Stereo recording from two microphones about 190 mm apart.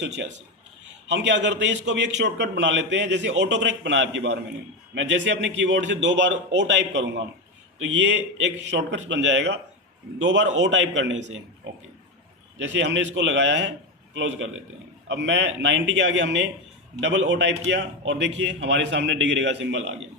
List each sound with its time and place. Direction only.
0.0 s a man's voice: 70° right (ahead or behind)
12.5 s a man's voice: 70° right (ahead or behind); by 14.6 s 90° right
15.0 s a man's voice: 70° right (ahead or behind)